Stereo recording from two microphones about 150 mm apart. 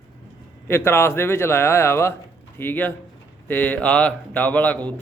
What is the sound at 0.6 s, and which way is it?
A man's voice, 15° left (ahead or behind).